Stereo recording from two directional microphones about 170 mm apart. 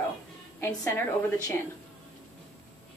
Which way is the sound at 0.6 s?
15° left (ahead or behind).